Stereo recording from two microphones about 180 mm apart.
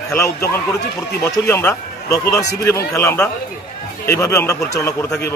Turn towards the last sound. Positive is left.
turn(degrees=15)  # may be behind; listen again after turning